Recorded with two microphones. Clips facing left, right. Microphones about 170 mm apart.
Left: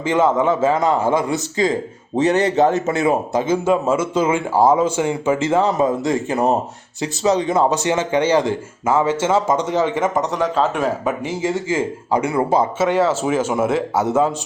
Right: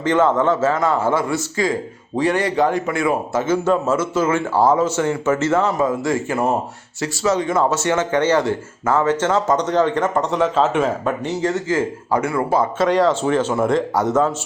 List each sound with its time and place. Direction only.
0.0 s speech: 10° left (ahead or behind)
12.8 s speech: 5° left (ahead or behind)